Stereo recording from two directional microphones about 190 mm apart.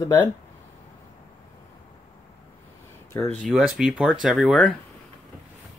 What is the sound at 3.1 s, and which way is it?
Speech, 10° left (ahead or behind).